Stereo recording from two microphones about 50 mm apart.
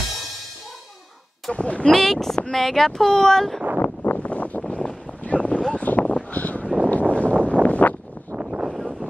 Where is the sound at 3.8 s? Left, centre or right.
Left.